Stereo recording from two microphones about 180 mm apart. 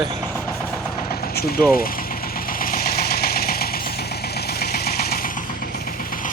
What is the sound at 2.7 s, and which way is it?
Engine, 55° left (ahead or behind).